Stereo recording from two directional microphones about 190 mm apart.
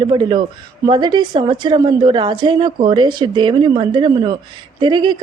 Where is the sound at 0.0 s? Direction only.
25° right (ahead or behind).